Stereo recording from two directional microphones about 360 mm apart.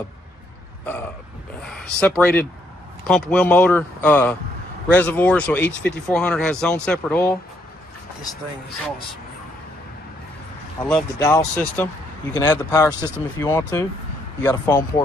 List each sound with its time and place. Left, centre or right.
1.6 s speech: centre
10.9 s speech: centre